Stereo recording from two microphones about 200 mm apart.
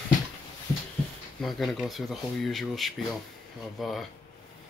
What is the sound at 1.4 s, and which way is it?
Speech, centre (ahead or behind).